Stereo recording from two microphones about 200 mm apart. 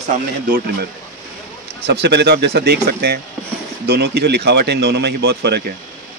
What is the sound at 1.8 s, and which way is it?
Speech, 60° right (ahead or behind).